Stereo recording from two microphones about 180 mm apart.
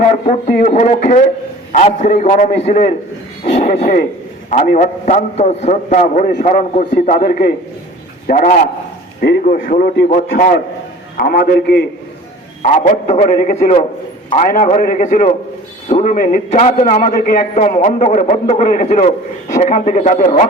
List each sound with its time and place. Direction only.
0.0 s a man's voice: 45° left (ahead or behind)
3.6 s a man's voice: 55° left (ahead or behind)
4.4 s a man's voice: 45° left (ahead or behind); by 11.9 s 65° left (ahead or behind)
12.6 s a man's voice: 45° left (ahead or behind)